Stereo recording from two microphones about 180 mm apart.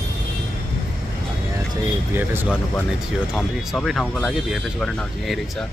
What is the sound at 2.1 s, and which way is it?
Speech, 10° right (ahead or behind).